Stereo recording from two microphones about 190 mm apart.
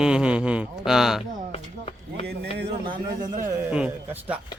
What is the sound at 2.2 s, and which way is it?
Speech, 60° right (ahead or behind).